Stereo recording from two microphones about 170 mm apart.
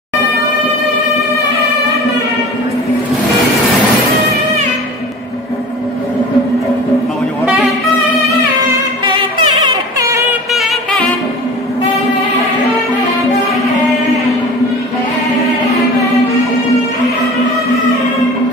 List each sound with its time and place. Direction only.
9.0 s music: 30° right (ahead or behind)
10.5 s music: centre (ahead or behind)